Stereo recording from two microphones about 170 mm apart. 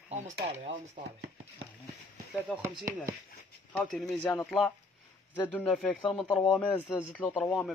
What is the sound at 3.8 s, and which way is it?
Speech, centre (ahead or behind).